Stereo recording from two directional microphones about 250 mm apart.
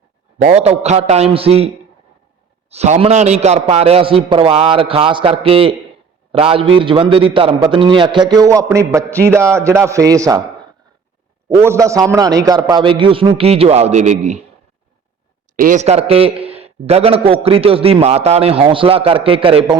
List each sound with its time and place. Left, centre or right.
0.4 s a man's voice: right
11.4 s a man's voice: centre; by 14.4 s right
15.5 s a man's voice: right